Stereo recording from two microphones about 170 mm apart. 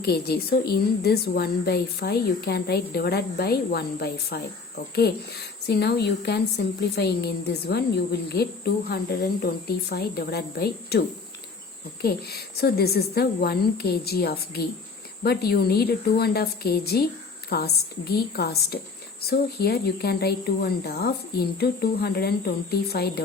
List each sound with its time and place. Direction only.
0.0 s a woman's voice: 70° left (ahead or behind)
5.6 s a woman's voice: 75° left (ahead or behind)
12.0 s a woman's voice: 65° left (ahead or behind)